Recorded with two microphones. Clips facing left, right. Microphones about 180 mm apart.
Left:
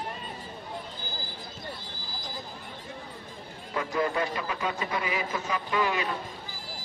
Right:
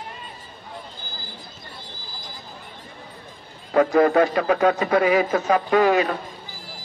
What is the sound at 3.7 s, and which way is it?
A man's voice, 75° right (ahead or behind).